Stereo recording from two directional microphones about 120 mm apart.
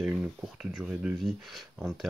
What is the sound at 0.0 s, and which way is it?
Speech, 5° right (ahead or behind).